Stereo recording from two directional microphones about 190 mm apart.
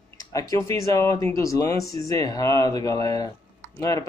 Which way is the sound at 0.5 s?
15° left (ahead or behind).